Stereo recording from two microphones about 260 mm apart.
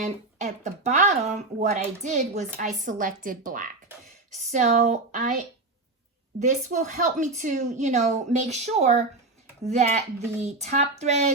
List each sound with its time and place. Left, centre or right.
0.0 s speech: right
6.4 s speech: right